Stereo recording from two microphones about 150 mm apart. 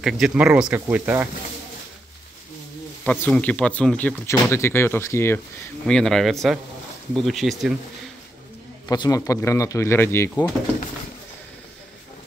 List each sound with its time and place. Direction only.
0.0 s speech: 5° right (ahead or behind)
3.1 s speech: 10° left (ahead or behind)
5.9 s speech: 5° left (ahead or behind)
8.8 s speech: 25° left (ahead or behind)